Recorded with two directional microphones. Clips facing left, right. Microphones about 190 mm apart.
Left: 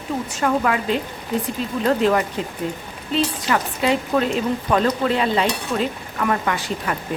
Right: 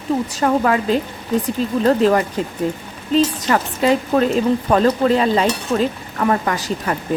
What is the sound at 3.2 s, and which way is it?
Speech, 40° right (ahead or behind).